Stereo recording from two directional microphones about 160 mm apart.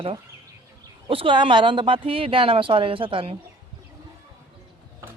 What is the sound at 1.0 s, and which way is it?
Speech, 30° right (ahead or behind).